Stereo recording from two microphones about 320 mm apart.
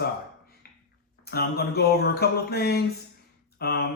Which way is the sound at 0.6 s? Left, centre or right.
Left.